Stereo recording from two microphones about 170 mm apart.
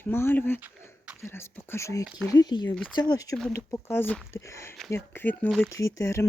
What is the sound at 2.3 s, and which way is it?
Speech, 25° left (ahead or behind).